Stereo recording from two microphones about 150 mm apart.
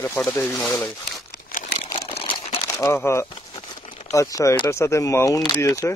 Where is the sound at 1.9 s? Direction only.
35° left (ahead or behind).